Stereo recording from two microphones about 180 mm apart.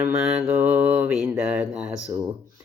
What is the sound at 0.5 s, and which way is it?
Mantra, 10° right (ahead or behind).